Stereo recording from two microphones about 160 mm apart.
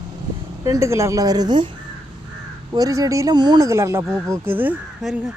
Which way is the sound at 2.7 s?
20° right (ahead or behind).